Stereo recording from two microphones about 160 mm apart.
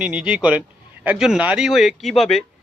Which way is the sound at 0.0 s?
5° right (ahead or behind).